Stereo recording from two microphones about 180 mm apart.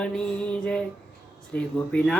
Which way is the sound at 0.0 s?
5° left (ahead or behind).